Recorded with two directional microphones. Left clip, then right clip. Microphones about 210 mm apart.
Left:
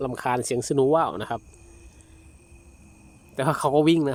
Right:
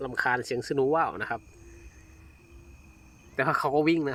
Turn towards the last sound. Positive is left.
turn(degrees=5)  # may be behind; listen again after turning